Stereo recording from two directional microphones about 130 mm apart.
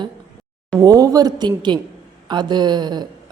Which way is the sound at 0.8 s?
25° right (ahead or behind).